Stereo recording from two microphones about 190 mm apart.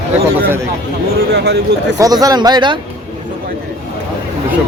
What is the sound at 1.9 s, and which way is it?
Speech, 20° right (ahead or behind).